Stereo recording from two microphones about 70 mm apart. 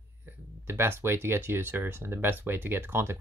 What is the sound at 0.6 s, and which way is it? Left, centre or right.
Speech, right.